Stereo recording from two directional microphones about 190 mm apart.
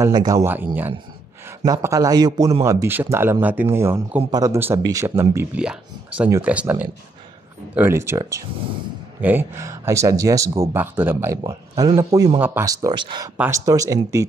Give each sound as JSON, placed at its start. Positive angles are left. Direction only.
{"t": 0.0, "sound": "speech", "side_deg": -20}